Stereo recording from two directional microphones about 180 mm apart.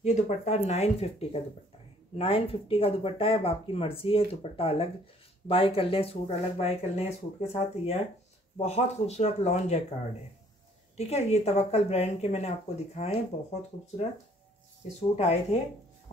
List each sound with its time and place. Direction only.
0.0 s speech: 40° left (ahead or behind)
11.0 s speech: 35° left (ahead or behind)